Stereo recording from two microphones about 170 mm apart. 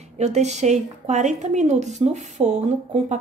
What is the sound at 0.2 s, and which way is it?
Speech, 40° right (ahead or behind).